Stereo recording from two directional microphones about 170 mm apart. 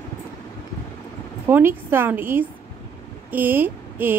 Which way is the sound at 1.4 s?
15° right (ahead or behind).